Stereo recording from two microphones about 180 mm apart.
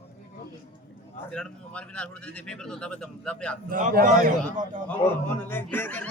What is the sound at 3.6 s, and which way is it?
Speech, 50° right (ahead or behind).